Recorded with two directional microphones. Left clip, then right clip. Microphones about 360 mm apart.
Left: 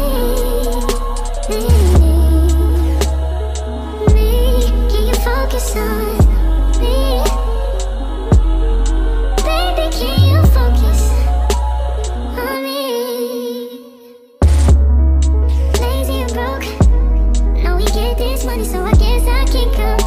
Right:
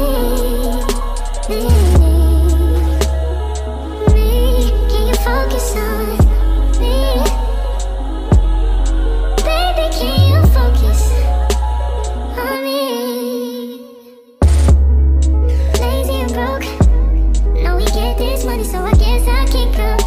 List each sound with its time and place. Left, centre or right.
0.0 s music: centre
12.4 s music: centre
15.7 s music: centre